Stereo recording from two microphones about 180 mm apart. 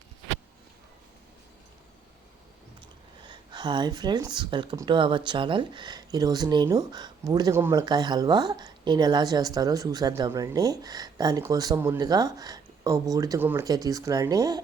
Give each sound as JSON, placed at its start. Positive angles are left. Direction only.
{"t": 3.2, "sound": "speech", "side_deg": -25}